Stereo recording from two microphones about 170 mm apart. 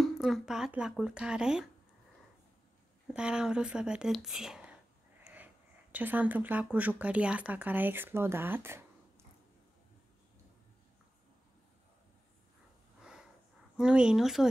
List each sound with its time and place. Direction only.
0.0 s speech: centre (ahead or behind)
3.1 s speech: 5° right (ahead or behind)
13.7 s speech: 5° right (ahead or behind)